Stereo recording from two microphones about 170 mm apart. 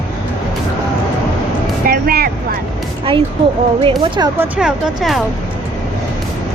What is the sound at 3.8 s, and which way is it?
Speech, 25° right (ahead or behind).